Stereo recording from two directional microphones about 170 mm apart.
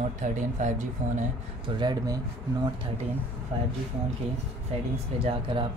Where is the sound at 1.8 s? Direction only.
25° right (ahead or behind).